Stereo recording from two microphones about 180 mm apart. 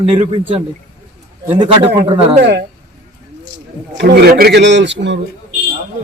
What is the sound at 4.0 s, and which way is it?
A man's voice, 60° right (ahead or behind).